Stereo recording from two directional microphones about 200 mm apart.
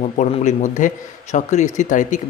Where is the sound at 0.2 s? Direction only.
35° left (ahead or behind).